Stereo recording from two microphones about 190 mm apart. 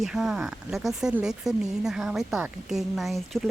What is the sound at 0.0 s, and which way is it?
Speech, centre (ahead or behind).